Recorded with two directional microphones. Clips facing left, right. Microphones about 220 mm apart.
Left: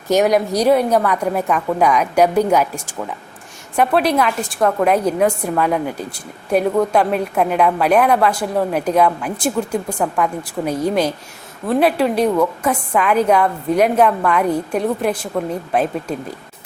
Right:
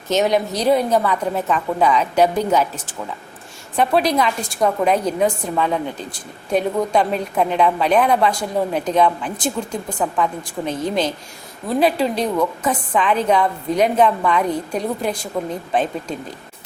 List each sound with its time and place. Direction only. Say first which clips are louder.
0.1 s a woman's voice: left 3 dB; 10° left (ahead or behind)